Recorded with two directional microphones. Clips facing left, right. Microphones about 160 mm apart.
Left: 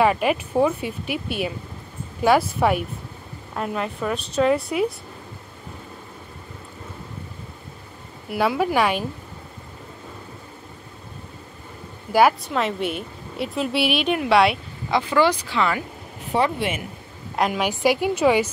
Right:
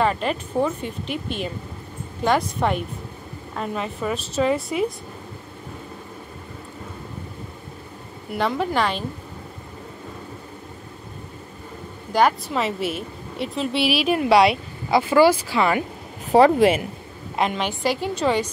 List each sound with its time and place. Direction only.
0.0 s a woman's voice: 10° left (ahead or behind)
8.3 s speech: 5° left (ahead or behind)
12.1 s a woman's voice: 5° left (ahead or behind)
16.5 s speech: 35° right (ahead or behind)
17.4 s speech: 5° left (ahead or behind)